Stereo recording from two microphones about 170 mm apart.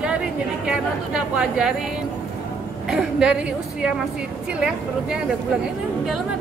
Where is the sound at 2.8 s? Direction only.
5° right (ahead or behind).